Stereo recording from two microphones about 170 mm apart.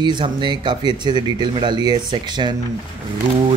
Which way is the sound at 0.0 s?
25° right (ahead or behind).